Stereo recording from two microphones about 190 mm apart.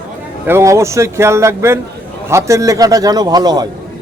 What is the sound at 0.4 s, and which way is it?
A man's voice, 15° right (ahead or behind).